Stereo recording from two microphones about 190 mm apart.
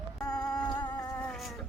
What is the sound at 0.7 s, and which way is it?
Music, 20° left (ahead or behind).